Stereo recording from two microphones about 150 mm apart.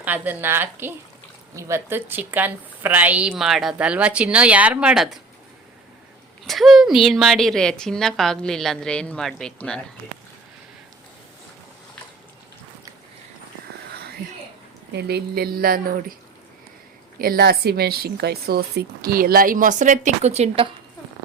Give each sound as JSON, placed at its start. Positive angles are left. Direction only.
{"t": 0.0, "sound": "a woman's voice", "side_deg": -10}
{"t": 6.4, "sound": "a woman's voice", "side_deg": 0}
{"t": 14.9, "sound": "speech", "side_deg": -90}
{"t": 17.2, "sound": "speech", "side_deg": -80}